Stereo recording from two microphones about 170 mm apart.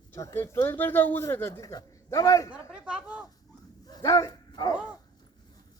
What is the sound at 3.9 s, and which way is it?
Dog, 20° left (ahead or behind).